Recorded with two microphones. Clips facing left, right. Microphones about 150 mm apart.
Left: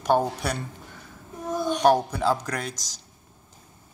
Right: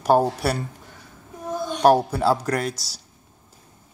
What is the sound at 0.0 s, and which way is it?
Speech, 5° right (ahead or behind).